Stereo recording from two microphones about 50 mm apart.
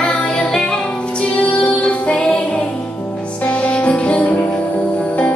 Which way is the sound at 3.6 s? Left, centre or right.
Left.